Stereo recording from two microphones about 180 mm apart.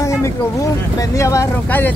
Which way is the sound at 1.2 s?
15° left (ahead or behind).